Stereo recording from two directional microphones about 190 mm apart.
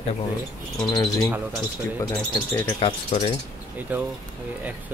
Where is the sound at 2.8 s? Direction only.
25° left (ahead or behind).